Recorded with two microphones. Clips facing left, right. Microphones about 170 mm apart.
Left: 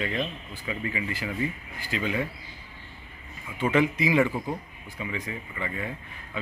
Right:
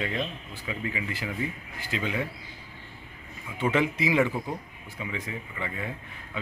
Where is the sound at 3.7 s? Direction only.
20° right (ahead or behind).